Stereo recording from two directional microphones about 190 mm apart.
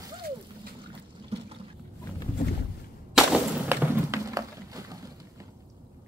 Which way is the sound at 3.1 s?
10° right (ahead or behind).